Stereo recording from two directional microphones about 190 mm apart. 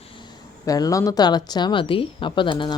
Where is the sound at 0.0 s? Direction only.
25° left (ahead or behind).